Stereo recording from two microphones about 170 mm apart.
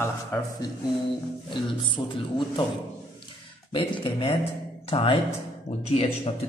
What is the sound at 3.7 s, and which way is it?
A man's voice, 30° left (ahead or behind).